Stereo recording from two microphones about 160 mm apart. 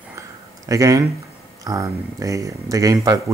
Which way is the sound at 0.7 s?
20° right (ahead or behind).